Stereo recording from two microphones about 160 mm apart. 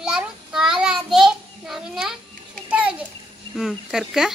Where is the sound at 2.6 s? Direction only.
10° right (ahead or behind).